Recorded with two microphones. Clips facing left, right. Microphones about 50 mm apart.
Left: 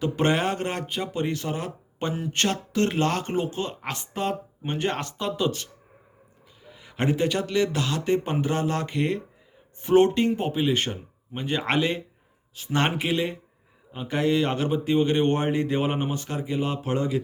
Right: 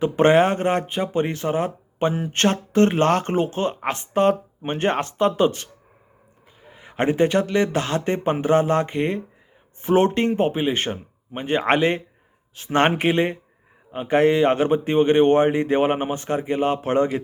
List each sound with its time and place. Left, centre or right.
0.0 s speech: right